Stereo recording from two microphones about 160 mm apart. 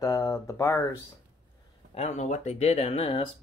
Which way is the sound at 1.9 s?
45° left (ahead or behind).